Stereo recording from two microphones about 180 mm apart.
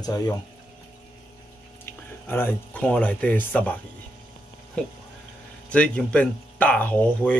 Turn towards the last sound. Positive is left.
turn(degrees=5)  # may be behind; listen again after turning